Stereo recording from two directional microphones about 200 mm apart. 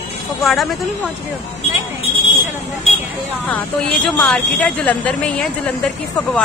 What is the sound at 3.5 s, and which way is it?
A woman's voice, 5° left (ahead or behind).